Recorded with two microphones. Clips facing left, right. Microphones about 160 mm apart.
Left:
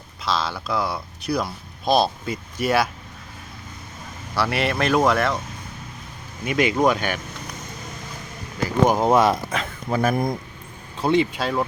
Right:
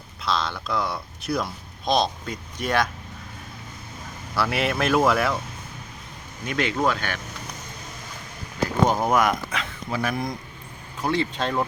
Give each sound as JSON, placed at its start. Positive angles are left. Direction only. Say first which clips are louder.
{"t": 0.3, "sound": "speech", "louder": "left 2 dB", "side_deg": 5}
{"t": 4.4, "sound": "speech", "louder": "left 1 dB", "side_deg": 0}
{"t": 6.4, "sound": "speech", "louder": "left 5 dB", "side_deg": 10}
{"t": 9.0, "sound": "speech", "louder": "left 4 dB", "side_deg": 25}
{"t": 9.5, "sound": "speech", "louder": "left 4 dB", "side_deg": 45}
{"t": 11.0, "sound": "speech", "louder": "left 4 dB", "side_deg": 20}